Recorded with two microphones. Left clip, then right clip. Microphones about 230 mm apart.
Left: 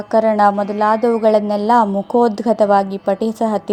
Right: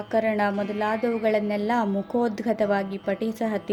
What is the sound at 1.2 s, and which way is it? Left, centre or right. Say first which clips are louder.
A woman's voice: left 10 dB; centre.